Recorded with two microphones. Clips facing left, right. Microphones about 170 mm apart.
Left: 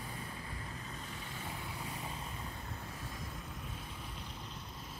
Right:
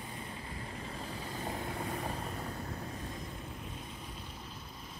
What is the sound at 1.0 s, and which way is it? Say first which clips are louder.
Vehicle: right 6 dB; 45° right (ahead or behind).